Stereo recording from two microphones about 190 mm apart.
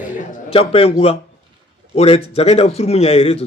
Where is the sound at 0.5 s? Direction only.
30° left (ahead or behind).